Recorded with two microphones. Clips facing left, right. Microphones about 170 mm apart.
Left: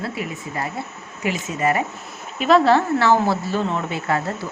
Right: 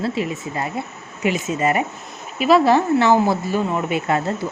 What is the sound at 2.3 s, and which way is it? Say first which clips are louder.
Speech: right 1 dB; 10° right (ahead or behind).